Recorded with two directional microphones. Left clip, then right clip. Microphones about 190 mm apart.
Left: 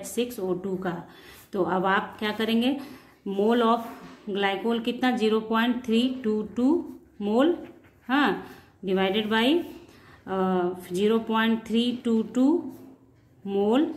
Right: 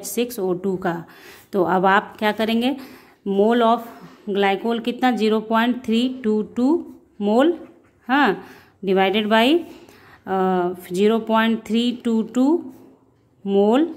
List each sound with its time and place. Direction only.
0.1 s speech: 45° right (ahead or behind)